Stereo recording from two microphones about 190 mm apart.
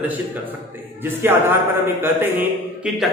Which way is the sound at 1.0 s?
10° right (ahead or behind).